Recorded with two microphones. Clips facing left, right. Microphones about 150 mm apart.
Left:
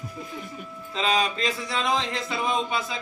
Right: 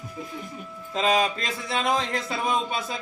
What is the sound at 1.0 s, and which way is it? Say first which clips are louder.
Speech: right 2 dB; 45° right (ahead or behind).